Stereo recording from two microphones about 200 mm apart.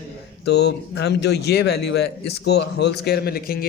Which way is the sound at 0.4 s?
55° left (ahead or behind).